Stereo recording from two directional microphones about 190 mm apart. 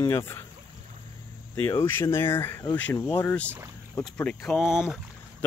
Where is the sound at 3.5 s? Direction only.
15° right (ahead or behind).